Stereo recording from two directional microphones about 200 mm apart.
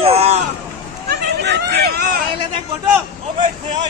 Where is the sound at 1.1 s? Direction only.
55° right (ahead or behind).